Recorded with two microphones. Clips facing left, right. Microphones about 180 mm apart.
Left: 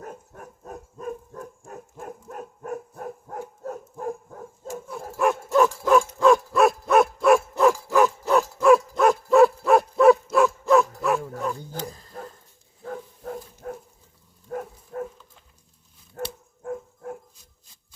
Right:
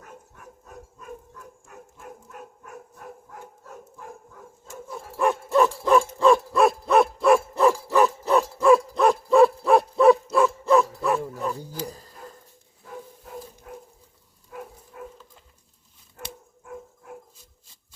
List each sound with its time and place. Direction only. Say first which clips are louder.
0.0 s dog: left 6 dB; 45° left (ahead or behind)
4.9 s dog: even; centre (ahead or behind)
12.8 s bow-wow: left 6 dB; 55° left (ahead or behind)
14.5 s dog: left 8 dB; 50° left (ahead or behind)
16.2 s dog: left 9 dB; 40° left (ahead or behind)